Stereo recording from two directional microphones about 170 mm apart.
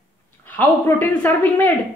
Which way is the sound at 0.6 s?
10° left (ahead or behind).